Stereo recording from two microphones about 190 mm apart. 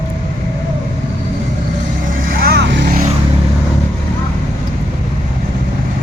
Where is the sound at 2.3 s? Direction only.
55° right (ahead or behind).